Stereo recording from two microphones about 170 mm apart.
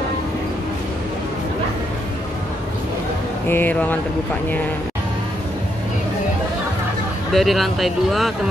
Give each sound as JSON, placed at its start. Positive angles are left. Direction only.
{"t": 3.4, "sound": "speech", "side_deg": 10}
{"t": 7.3, "sound": "speech", "side_deg": 0}